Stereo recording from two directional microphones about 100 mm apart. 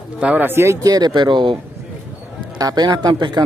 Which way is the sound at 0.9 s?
45° right (ahead or behind).